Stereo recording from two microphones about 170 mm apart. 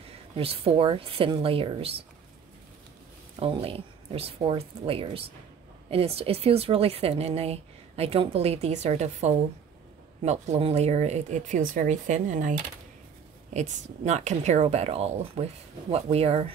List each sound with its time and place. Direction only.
0.4 s speech: 35° right (ahead or behind)
3.3 s speech: 35° right (ahead or behind)